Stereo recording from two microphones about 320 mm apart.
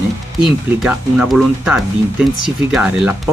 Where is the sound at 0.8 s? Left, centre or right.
Centre.